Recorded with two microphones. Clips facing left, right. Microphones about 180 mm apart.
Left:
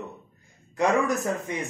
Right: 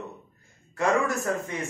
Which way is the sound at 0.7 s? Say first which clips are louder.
Left 2 dB; 15° left (ahead or behind).